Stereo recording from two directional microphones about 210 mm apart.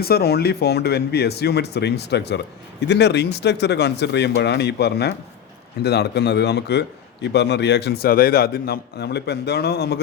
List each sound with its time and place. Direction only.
0.0 s a man's voice: 50° left (ahead or behind)